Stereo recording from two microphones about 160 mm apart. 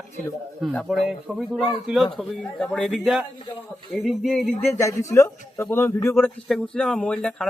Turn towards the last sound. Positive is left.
turn(degrees=5)  # may be behind; listen again after turning